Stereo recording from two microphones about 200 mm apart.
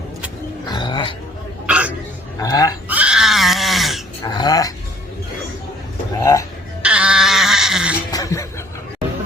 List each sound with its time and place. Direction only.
0.6 s bird: 20° left (ahead or behind)
1.6 s hiccup: 5° right (ahead or behind)
2.4 s speech: 15° left (ahead or behind)
2.9 s a sound: 5° right (ahead or behind)
4.2 s dog: 20° left (ahead or behind)
6.1 s a sound: 15° left (ahead or behind)
6.8 s music: 5° right (ahead or behind)
8.1 s music: 15° left (ahead or behind)